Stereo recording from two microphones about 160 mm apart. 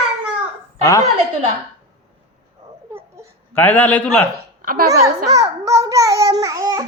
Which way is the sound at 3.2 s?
15° right (ahead or behind).